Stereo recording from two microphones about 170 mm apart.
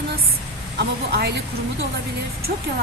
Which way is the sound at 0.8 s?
75° right (ahead or behind).